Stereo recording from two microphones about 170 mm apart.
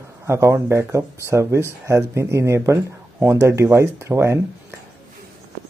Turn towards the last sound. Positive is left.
turn(degrees=-15)  # may be behind; listen again after turning